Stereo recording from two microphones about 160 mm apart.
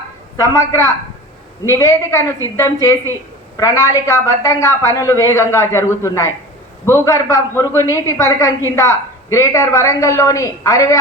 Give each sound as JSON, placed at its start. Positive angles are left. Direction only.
{"t": 0.3, "sound": "a woman's voice", "side_deg": 20}